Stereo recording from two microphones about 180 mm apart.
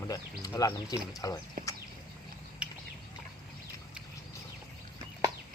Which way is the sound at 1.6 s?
50° right (ahead or behind).